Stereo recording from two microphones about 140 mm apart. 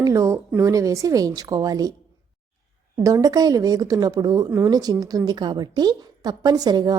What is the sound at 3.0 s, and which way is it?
A woman's voice, 25° right (ahead or behind).